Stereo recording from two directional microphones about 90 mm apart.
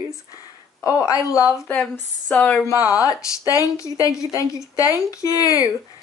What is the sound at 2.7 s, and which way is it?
Speech, 20° right (ahead or behind).